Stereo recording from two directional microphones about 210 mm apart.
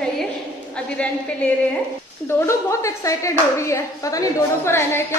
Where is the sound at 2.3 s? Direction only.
15° left (ahead or behind).